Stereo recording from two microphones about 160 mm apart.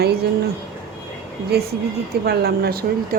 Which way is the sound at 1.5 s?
80° right.